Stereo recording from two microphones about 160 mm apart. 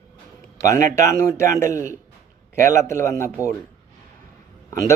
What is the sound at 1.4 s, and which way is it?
Speech, 15° left (ahead or behind).